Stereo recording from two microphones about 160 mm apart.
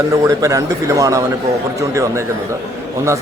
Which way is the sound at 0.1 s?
20° right (ahead or behind).